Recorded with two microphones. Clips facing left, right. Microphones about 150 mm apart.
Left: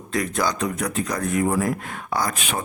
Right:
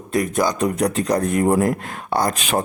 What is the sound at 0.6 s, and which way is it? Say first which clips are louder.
Speech: right 6 dB; 35° right (ahead or behind).